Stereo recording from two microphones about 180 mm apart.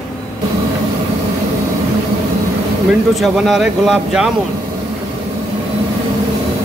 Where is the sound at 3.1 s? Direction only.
Centre (ahead or behind).